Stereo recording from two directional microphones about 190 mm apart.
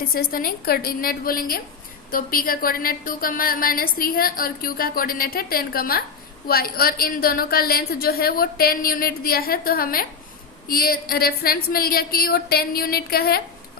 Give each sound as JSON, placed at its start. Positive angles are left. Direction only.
{"t": 0.1, "sound": "a woman's voice", "side_deg": 50}